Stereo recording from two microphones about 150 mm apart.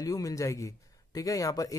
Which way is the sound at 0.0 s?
25° left (ahead or behind).